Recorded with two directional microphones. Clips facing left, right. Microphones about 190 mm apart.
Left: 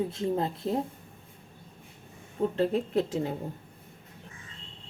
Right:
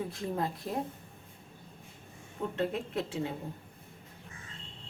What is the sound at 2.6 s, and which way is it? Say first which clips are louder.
Speech: left 6 dB; 35° left (ahead or behind).